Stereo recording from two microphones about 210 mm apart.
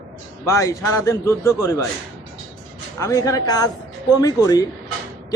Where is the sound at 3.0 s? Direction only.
15° left (ahead or behind).